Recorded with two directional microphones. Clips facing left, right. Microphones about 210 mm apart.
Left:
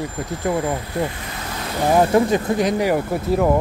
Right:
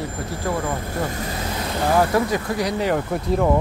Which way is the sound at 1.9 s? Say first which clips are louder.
Left 4 dB; 25° left (ahead or behind).